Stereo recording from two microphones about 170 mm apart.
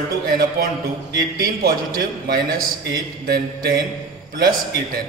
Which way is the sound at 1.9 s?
65° right (ahead or behind).